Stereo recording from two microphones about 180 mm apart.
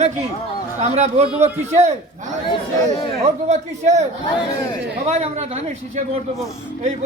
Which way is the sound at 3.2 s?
40° right (ahead or behind).